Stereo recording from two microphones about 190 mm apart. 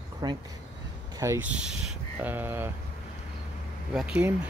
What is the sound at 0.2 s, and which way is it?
Speech, 20° right (ahead or behind).